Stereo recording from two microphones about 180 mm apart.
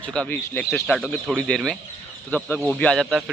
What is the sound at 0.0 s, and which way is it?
A man's voice, 5° left (ahead or behind).